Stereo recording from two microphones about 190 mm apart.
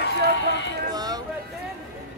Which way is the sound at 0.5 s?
70° left (ahead or behind).